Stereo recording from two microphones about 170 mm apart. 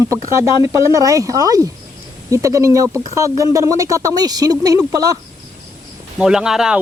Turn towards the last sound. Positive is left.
turn(degrees=-5)  # may be behind; listen again after turning